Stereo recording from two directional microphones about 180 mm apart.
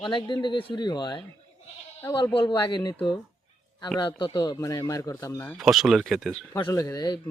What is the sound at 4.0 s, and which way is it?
Speech, 25° left (ahead or behind).